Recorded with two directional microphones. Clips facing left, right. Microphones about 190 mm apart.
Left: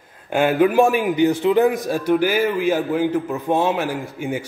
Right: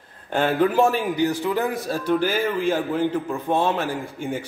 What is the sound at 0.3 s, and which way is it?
A man's voice, 10° left (ahead or behind).